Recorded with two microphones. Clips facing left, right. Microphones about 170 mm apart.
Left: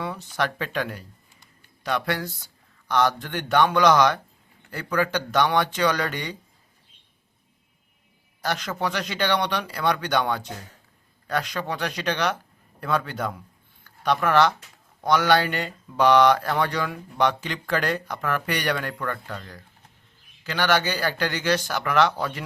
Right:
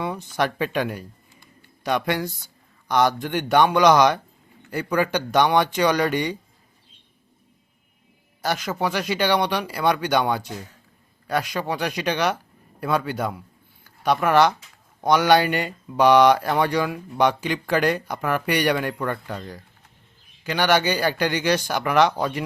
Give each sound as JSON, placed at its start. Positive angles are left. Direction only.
{"t": 0.0, "sound": "speech", "side_deg": -15}
{"t": 8.4, "sound": "speech", "side_deg": -10}